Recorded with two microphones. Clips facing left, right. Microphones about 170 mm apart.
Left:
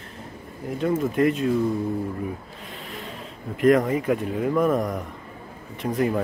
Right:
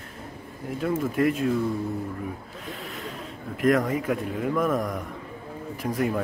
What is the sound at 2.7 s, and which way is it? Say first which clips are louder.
Rub: right 1 dB; centre (ahead or behind).